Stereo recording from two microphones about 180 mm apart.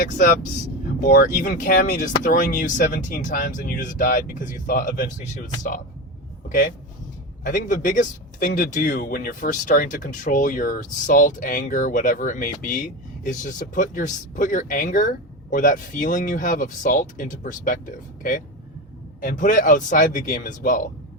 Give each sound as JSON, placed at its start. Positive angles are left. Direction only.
{"t": 0.0, "sound": "speech", "side_deg": 50}